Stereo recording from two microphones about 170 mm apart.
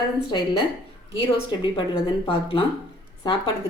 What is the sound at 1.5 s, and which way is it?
A woman's voice, 30° left (ahead or behind).